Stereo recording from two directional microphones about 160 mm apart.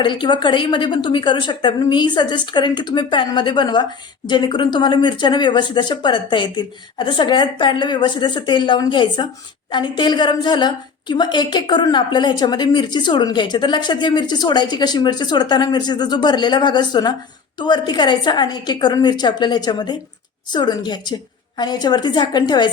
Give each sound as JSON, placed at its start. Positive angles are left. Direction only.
{"t": 0.0, "sound": "a woman's voice", "side_deg": 30}